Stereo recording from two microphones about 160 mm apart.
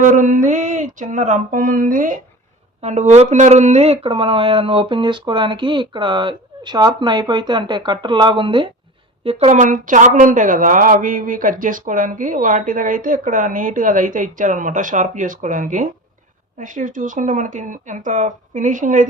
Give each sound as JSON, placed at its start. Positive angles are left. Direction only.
{"t": 0.0, "sound": "speech", "side_deg": -55}
{"t": 2.8, "sound": "speech", "side_deg": -45}
{"t": 9.5, "sound": "a woman's voice", "side_deg": -50}